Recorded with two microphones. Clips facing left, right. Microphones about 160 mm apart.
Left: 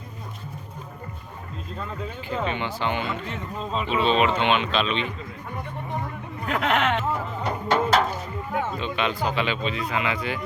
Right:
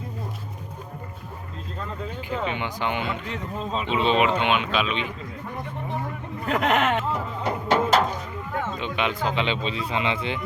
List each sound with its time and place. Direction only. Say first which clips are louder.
2.4 s speech: left 2 dB; 15° right (ahead or behind)
3.2 s speech: right 1 dB; centre (ahead or behind)
3.8 s speech: even; 20° right (ahead or behind)
6.5 s speech: right 1 dB; 45° right (ahead or behind)
7.8 s a sound: even; 5° right (ahead or behind)
8.1 s boat: left 2 dB; 10° left (ahead or behind)
8.8 s speech: even; 15° right (ahead or behind)